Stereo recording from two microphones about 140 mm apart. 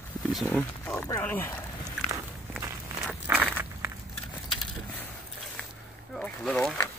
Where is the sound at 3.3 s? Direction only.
15° right (ahead or behind).